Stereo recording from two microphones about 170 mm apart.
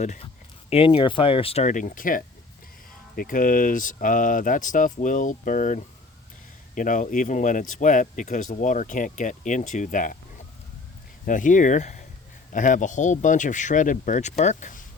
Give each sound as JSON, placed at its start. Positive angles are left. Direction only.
{"t": 0.0, "sound": "speech", "side_deg": 45}
{"t": 0.7, "sound": "speech", "side_deg": 30}